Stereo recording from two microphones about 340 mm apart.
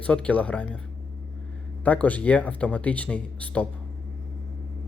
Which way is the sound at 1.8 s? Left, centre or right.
Centre.